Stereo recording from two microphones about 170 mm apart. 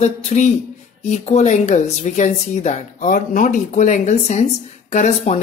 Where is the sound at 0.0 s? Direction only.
40° left (ahead or behind).